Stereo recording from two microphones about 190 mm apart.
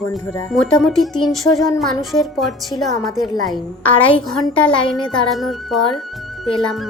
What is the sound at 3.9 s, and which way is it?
Speech, 30° left (ahead or behind).